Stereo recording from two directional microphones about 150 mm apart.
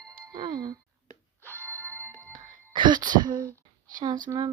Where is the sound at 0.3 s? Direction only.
30° right (ahead or behind).